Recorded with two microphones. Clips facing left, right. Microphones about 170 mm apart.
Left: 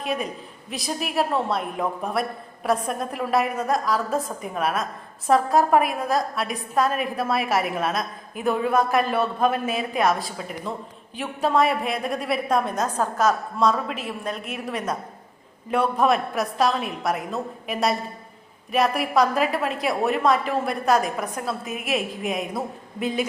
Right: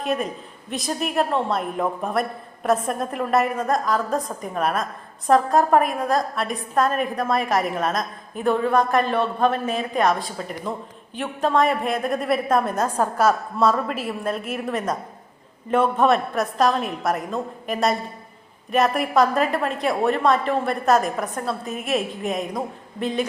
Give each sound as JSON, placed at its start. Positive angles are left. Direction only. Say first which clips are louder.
{"t": 0.0, "sound": "a woman's voice", "louder": "right 3 dB", "side_deg": 0}
{"t": 21.6, "sound": "a woman's voice", "louder": "right 2 dB", "side_deg": -40}
{"t": 22.3, "sound": "a woman's voice", "louder": "right 1 dB", "side_deg": 5}